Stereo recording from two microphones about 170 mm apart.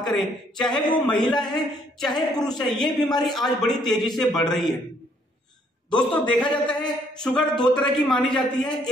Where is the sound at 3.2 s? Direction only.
Centre (ahead or behind).